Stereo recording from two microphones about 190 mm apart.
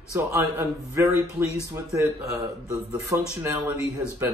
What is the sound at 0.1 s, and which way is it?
Speech, 15° right (ahead or behind).